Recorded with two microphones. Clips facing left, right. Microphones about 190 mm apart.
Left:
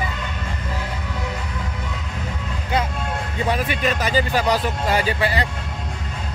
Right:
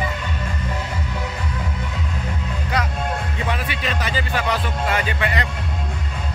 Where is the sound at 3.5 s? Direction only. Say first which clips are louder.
Left 6 dB; 45° left (ahead or behind).